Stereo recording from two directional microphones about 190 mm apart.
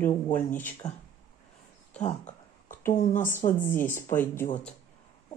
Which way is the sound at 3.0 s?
40° left (ahead or behind).